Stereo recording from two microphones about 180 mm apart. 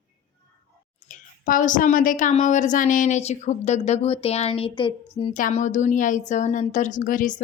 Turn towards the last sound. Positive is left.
turn(degrees=45)  # may be behind; listen again after turning